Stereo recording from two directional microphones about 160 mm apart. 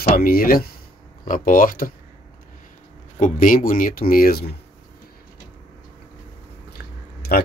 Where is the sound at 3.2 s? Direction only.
55° left (ahead or behind).